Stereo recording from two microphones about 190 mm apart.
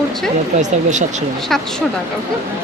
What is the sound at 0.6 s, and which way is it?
Speech, 40° right (ahead or behind).